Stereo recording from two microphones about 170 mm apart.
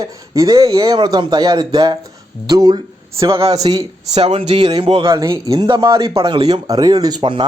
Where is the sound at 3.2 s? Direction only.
35° right (ahead or behind).